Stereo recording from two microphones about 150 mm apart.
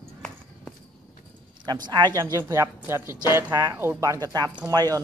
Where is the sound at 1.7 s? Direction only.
30° right (ahead or behind).